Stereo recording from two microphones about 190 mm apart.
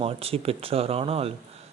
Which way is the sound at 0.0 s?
30° right (ahead or behind).